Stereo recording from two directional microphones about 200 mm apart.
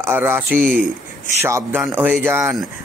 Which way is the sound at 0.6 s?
45° right (ahead or behind).